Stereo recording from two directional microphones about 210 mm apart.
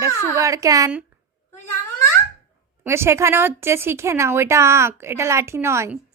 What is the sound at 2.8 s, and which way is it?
Speech, 10° right (ahead or behind).